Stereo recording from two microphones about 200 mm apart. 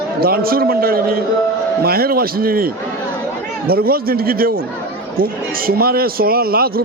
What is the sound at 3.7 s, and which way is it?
A man's voice, 50° right (ahead or behind).